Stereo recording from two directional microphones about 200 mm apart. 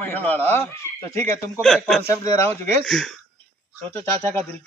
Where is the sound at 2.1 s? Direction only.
15° left (ahead or behind).